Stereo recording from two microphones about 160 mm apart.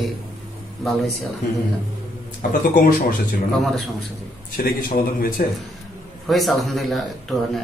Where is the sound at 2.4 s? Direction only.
60° left (ahead or behind).